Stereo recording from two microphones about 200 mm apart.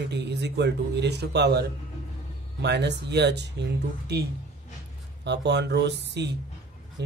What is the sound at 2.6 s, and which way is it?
Speech, 60° right (ahead or behind).